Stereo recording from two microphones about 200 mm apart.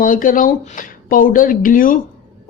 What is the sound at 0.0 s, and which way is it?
Speech, 45° left (ahead or behind).